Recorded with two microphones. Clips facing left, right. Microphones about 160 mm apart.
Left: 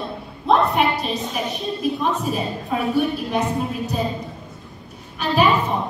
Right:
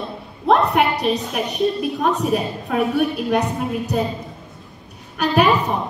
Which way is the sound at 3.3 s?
70° right (ahead or behind).